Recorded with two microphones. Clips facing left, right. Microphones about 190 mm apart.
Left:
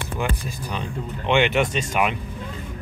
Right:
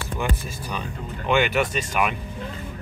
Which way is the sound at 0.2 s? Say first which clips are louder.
Left 1 dB; 15° left (ahead or behind).